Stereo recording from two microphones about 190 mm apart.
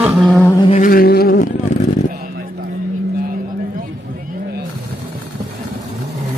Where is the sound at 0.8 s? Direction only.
50° left (ahead or behind).